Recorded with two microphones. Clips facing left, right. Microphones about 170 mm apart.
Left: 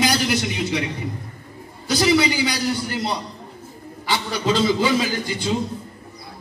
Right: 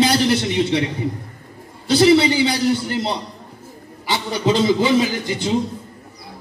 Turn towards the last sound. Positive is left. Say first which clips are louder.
# right 4 dB
turn(degrees=-20)  # may be behind; listen again after turning